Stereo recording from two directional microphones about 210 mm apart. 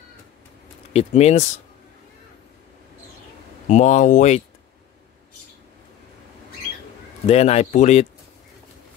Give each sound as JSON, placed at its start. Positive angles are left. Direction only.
{"t": 0.9, "sound": "speech", "side_deg": 30}
{"t": 3.6, "sound": "speech", "side_deg": 35}
{"t": 7.2, "sound": "speech", "side_deg": 30}